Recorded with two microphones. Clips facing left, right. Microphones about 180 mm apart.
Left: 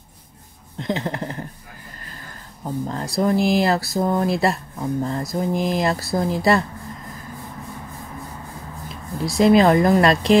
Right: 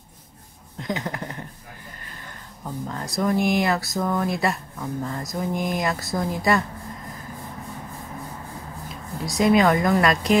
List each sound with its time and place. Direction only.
0.8 s speech: 30° left (ahead or behind)
2.6 s speech: 30° left (ahead or behind)
9.2 s speech: 30° left (ahead or behind)